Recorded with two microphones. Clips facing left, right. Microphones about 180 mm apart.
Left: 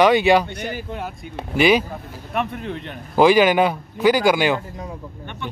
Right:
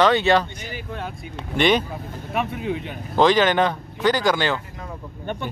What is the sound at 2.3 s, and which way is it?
Speech, 5° right (ahead or behind).